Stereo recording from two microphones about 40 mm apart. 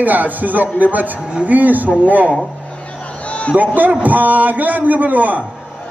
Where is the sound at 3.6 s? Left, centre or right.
Right.